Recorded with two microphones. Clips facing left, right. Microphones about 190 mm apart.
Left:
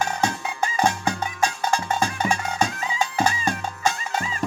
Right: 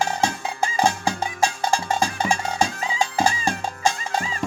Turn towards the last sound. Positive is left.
turn(degrees=-35)  # may be behind; listen again after turning